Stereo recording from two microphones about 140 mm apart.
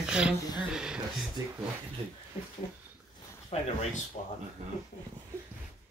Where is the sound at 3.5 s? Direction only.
50° left (ahead or behind).